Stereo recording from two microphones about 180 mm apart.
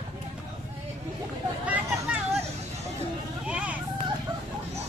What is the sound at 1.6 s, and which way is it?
Hubbub, 10° right (ahead or behind).